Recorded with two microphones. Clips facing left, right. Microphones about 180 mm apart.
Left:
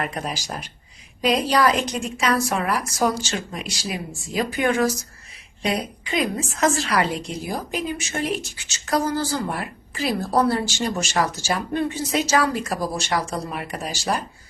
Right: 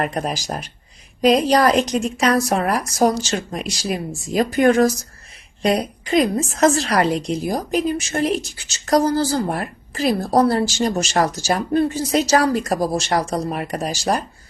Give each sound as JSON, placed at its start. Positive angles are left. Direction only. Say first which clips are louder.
{"t": 0.0, "sound": "a woman's voice", "louder": "right 5 dB", "side_deg": -45}